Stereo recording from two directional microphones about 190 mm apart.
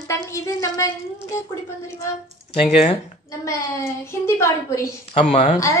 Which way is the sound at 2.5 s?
30° left (ahead or behind).